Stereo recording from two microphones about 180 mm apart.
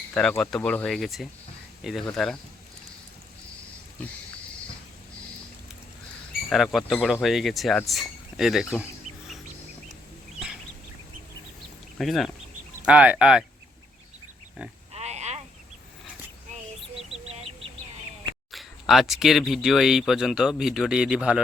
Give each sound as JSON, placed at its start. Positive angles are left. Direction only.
{"t": 0.1, "sound": "speech", "side_deg": 5}
{"t": 6.5, "sound": "speech", "side_deg": 0}
{"t": 11.9, "sound": "speech", "side_deg": 0}
{"t": 14.9, "sound": "a sound", "side_deg": -35}
{"t": 17.1, "sound": "chicken", "side_deg": -35}
{"t": 18.5, "sound": "speech", "side_deg": 0}